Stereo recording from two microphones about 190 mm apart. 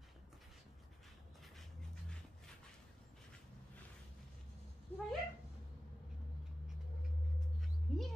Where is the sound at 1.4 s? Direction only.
Centre (ahead or behind).